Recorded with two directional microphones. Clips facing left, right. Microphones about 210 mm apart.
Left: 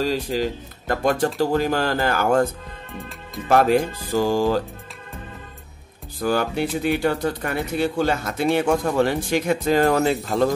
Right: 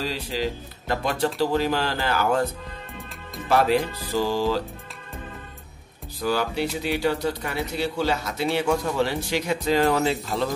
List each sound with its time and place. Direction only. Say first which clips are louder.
0.0 s speech: left 5 dB; 45° left (ahead or behind)
6.1 s speech: left 3 dB; 50° left (ahead or behind)